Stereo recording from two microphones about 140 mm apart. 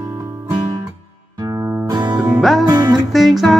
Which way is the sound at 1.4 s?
25° right (ahead or behind).